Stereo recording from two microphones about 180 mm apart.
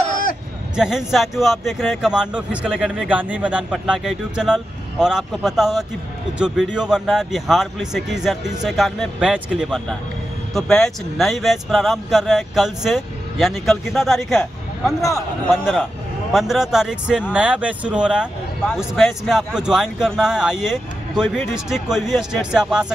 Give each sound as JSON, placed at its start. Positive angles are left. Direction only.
{"t": 0.7, "sound": "speech", "side_deg": -5}
{"t": 15.0, "sound": "a man's voice", "side_deg": 15}
{"t": 15.5, "sound": "speech", "side_deg": 0}